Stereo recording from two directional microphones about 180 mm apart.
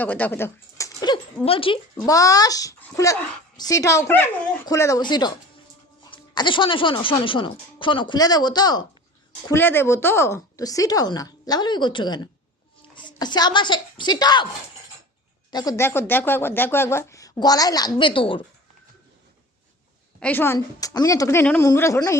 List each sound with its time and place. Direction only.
0.0 s speech: 10° left (ahead or behind); by 1.8 s 30° left (ahead or behind)
2.0 s speech: 20° left (ahead or behind)
9.5 s a woman's voice: 10° left (ahead or behind)
15.4 s speech: 20° left (ahead or behind)
20.1 s speech: 10° left (ahead or behind)